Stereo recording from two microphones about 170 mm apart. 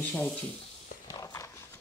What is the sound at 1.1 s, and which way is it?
Horse, 20° left (ahead or behind).